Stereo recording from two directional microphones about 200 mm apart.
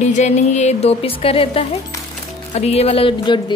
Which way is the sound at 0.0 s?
35° left (ahead or behind).